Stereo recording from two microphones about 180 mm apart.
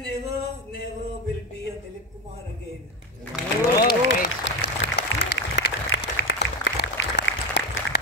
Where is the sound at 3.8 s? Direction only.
70° left (ahead or behind).